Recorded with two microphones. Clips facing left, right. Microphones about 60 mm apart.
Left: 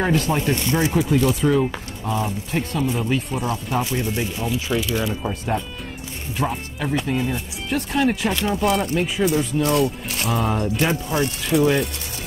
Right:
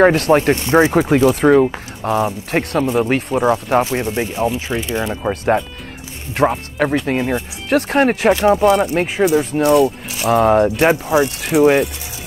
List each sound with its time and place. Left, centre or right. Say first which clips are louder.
0.0 s speech: right 9 dB; right
2.8 s speech: right 6 dB; right
4.1 s speech: right 6 dB; right
5.3 s speech: right 8 dB; right
6.3 s speech: right 9 dB; right
8.3 s speech: right 10 dB; right
8.6 s speech: right 4 dB; centre
8.9 s speech: right 5 dB; right
9.7 s speech: right 7 dB; centre
10.2 s speech: right 10 dB; right